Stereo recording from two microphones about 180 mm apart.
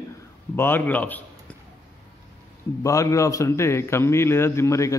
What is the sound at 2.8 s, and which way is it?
A man's voice, 15° left (ahead or behind).